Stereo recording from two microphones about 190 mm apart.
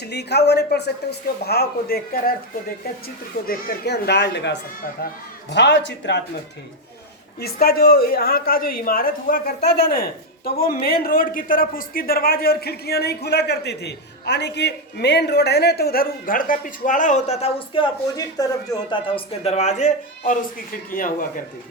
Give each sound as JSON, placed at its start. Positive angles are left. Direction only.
{"t": 0.0, "sound": "speech", "side_deg": 60}
{"t": 7.3, "sound": "speech", "side_deg": 55}
{"t": 18.2, "sound": "speech", "side_deg": 20}